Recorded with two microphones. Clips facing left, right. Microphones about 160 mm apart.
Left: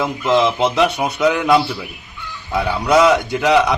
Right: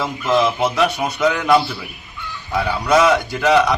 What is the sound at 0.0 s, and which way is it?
Speech, 20° left (ahead or behind).